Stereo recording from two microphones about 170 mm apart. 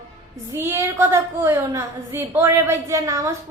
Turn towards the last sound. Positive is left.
turn(degrees=-20)  # may be behind; listen again after turning